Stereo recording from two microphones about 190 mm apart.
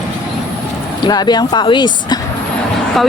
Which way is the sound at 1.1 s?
20° left (ahead or behind).